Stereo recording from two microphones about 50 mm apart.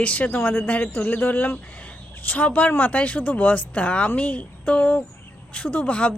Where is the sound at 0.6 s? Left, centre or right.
Left.